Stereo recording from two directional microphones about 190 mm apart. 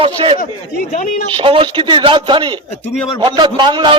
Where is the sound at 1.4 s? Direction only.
25° right (ahead or behind).